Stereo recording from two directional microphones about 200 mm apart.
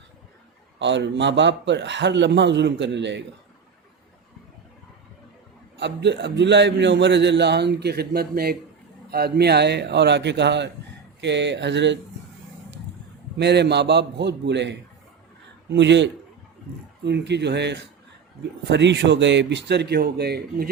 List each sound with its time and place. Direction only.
0.8 s a man's voice: 60° right (ahead or behind)
5.8 s a man's voice: 60° right (ahead or behind)
13.3 s a man's voice: 55° right (ahead or behind)